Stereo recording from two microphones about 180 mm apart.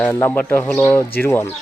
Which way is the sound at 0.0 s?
10° left (ahead or behind).